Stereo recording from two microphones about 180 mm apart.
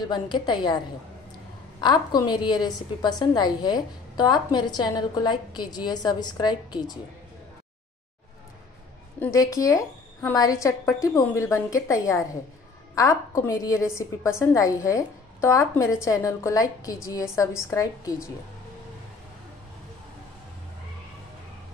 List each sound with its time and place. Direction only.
0.1 s a woman's voice: 25° left (ahead or behind)
1.8 s a woman's voice: 25° left (ahead or behind)
9.2 s a woman's voice: 20° left (ahead or behind)